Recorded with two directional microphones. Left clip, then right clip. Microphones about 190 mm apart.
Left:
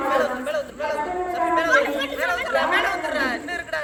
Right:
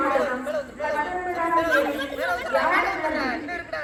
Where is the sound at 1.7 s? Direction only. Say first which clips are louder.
Left 3 dB; 20° left (ahead or behind).